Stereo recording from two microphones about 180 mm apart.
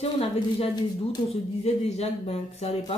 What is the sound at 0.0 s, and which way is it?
Speech, 35° left (ahead or behind).